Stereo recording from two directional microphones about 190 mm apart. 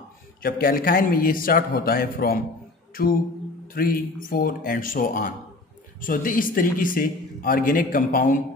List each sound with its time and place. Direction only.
0.4 s a man's voice: 50° left (ahead or behind)